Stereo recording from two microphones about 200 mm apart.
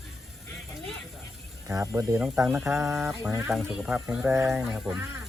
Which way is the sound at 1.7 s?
15° right (ahead or behind).